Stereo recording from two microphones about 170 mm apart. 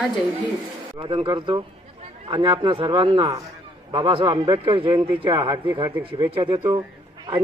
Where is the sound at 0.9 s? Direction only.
30° right (ahead or behind).